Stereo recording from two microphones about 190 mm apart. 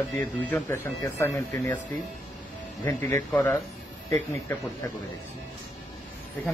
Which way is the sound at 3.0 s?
10° left (ahead or behind).